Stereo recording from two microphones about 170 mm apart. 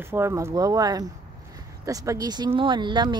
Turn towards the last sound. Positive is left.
turn(degrees=-25)  # may be behind; listen again after turning